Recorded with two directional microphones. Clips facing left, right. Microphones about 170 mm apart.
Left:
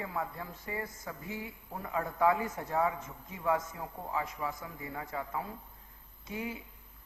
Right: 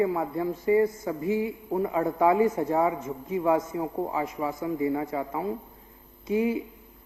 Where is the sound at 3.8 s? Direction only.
35° right (ahead or behind).